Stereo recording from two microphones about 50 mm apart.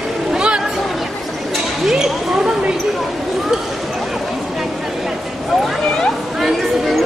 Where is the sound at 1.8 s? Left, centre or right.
Centre.